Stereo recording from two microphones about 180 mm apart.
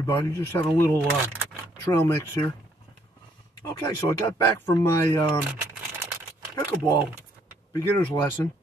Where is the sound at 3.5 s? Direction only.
25° left (ahead or behind).